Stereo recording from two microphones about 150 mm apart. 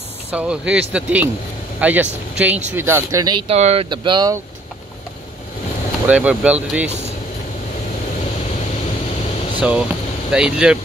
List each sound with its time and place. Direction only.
0.3 s speech: 10° right (ahead or behind); by 3.4 s 25° right (ahead or behind)
3.4 s speech: 45° right (ahead or behind)
3.9 s speech: 30° right (ahead or behind)
6.0 s speech: 10° right (ahead or behind)
9.6 s speech: 5° right (ahead or behind)